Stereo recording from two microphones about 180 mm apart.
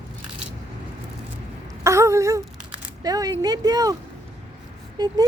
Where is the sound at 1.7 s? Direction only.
15° right (ahead or behind).